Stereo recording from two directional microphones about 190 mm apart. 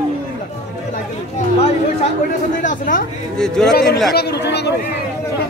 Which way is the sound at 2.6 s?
45° left (ahead or behind).